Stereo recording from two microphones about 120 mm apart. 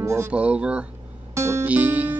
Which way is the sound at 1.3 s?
20° right (ahead or behind).